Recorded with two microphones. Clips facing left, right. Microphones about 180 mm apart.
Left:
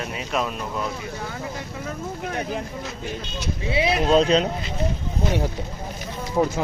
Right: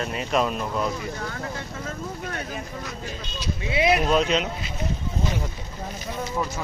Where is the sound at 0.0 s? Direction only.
Centre (ahead or behind).